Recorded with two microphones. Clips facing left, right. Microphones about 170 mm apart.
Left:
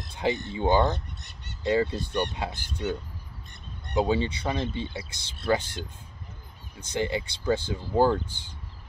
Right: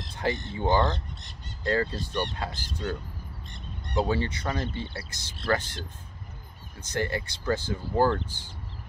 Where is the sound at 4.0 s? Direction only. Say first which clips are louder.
Left 2 dB; 15° left (ahead or behind).